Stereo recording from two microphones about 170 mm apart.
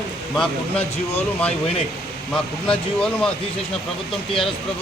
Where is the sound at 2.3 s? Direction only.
5° left (ahead or behind).